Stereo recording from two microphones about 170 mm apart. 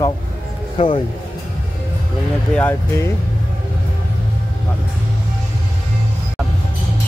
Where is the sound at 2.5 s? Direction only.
10° left (ahead or behind).